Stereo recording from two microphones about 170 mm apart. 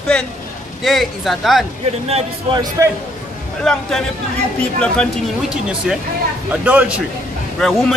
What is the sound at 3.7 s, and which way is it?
Speech, centre (ahead or behind).